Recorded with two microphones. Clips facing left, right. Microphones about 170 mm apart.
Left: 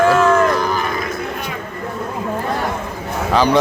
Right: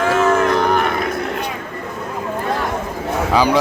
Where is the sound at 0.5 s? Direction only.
70° right (ahead or behind).